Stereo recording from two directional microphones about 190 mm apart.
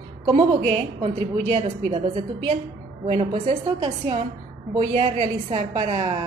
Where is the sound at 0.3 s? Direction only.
35° right (ahead or behind).